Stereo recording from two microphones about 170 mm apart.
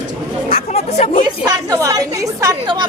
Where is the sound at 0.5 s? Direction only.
40° left (ahead or behind).